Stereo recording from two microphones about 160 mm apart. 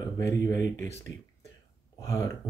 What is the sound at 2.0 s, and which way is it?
Speech, 20° left (ahead or behind).